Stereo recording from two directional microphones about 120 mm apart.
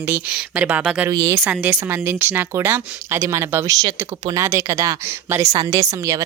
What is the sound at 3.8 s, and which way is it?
Speech, 35° right (ahead or behind).